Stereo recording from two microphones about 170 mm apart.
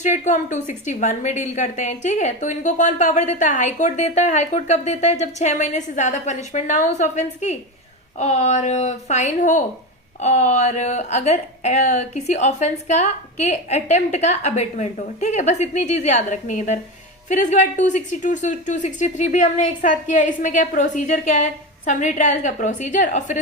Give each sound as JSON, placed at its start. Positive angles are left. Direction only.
{"t": 0.0, "sound": "a woman's voice", "side_deg": 45}